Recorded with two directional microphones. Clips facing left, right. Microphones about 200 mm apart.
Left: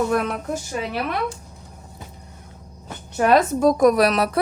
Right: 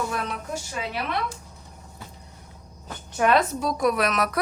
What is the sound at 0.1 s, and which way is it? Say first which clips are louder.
Speech: left 8 dB; 50° left (ahead or behind).